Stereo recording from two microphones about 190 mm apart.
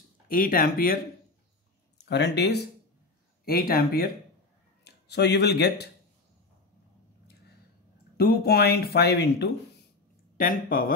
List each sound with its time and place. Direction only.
0.3 s speech: 50° left (ahead or behind)
2.0 s speech: 65° left (ahead or behind)
8.2 s speech: 55° left (ahead or behind)
10.3 s speech: 50° left (ahead or behind)